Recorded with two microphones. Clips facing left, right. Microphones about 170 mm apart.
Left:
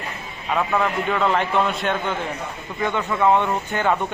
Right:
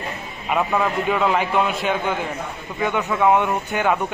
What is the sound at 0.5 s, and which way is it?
Speech, 5° right (ahead or behind).